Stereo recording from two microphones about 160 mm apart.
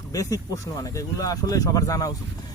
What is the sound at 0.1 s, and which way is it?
Speech, 20° left (ahead or behind).